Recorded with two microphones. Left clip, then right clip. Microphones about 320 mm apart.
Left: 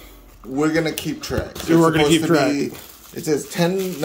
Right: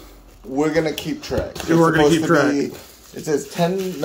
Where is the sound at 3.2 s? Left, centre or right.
Left.